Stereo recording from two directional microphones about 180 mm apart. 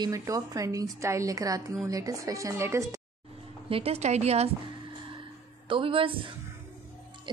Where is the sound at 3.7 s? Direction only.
30° right (ahead or behind).